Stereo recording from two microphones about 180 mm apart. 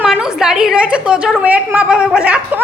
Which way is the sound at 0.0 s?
5° right (ahead or behind).